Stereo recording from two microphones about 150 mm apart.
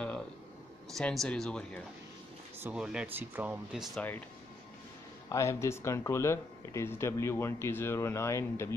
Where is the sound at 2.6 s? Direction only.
5° right (ahead or behind).